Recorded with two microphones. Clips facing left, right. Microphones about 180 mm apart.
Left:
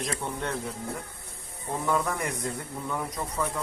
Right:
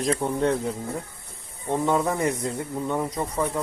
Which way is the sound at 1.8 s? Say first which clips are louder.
Right 5 dB; 25° right (ahead or behind).